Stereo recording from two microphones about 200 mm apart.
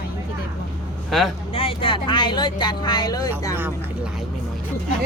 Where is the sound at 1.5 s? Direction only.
25° left (ahead or behind).